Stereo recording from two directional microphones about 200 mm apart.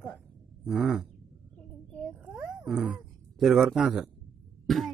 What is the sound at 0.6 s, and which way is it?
Speech, 5° right (ahead or behind).